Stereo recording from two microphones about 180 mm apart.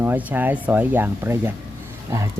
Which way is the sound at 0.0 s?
10° right (ahead or behind).